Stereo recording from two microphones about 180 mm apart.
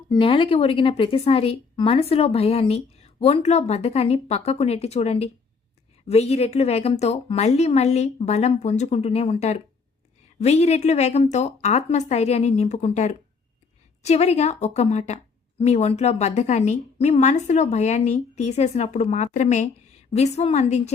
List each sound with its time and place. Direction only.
0.1 s a woman's voice: 30° left (ahead or behind)